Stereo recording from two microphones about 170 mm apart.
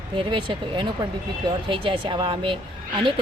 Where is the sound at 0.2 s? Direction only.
30° right (ahead or behind).